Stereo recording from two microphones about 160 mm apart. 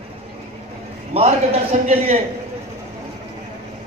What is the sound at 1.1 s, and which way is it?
A man's voice, 40° right (ahead or behind).